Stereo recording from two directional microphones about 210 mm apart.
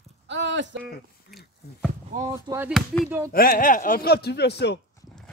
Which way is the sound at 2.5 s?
20° right (ahead or behind).